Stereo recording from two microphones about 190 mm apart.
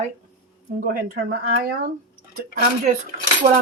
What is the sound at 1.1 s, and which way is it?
Speech, 55° right (ahead or behind).